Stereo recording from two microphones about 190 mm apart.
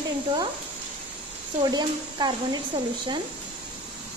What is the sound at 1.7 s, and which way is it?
Speech, 20° right (ahead or behind).